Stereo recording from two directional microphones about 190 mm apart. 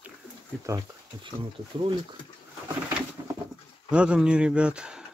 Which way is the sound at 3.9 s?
5° right (ahead or behind).